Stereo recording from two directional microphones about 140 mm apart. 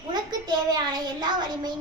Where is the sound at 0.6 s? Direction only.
30° right (ahead or behind).